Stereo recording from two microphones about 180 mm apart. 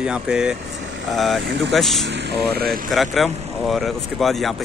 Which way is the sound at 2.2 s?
60° right (ahead or behind).